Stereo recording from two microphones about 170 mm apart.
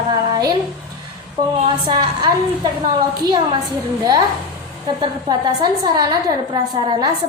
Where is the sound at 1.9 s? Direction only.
25° right (ahead or behind).